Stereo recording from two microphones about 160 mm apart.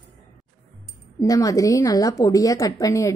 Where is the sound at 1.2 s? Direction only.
20° left (ahead or behind).